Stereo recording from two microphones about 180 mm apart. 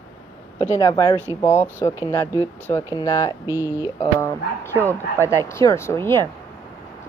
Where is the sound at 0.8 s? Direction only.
20° left (ahead or behind).